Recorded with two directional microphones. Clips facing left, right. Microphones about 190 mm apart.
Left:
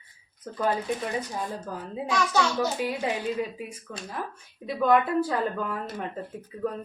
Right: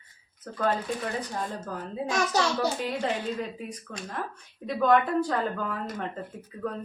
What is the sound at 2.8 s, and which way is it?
Speech, 10° left (ahead or behind).